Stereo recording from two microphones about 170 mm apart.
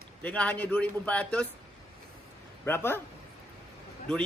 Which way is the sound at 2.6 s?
15° left (ahead or behind).